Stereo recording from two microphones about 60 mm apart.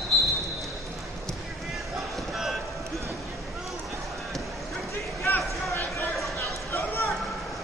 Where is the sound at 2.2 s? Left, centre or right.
Centre.